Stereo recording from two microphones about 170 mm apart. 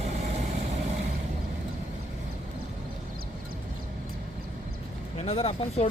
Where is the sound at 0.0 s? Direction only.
40° right (ahead or behind).